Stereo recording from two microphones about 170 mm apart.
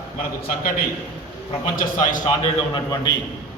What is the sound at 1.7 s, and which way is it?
Speech, 50° left (ahead or behind).